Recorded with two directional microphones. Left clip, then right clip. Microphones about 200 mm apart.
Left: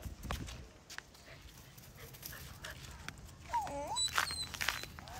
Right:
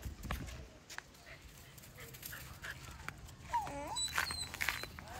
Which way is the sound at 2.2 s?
55° left (ahead or behind).